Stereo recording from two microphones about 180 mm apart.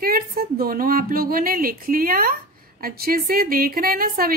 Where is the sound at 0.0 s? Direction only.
55° right (ahead or behind).